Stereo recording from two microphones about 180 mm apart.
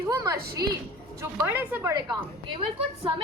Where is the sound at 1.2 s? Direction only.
10° right (ahead or behind).